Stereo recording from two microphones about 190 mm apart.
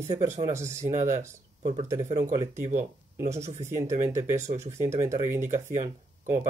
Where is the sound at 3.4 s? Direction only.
40° right (ahead or behind).